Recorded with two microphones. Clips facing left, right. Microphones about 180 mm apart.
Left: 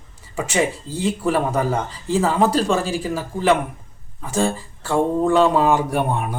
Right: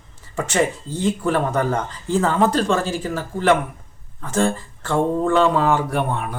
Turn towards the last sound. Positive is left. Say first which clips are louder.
# left 1 dB
turn(degrees=15)  # may be behind; listen again after turning